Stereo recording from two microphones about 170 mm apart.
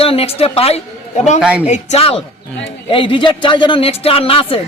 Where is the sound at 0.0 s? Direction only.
35° left (ahead or behind).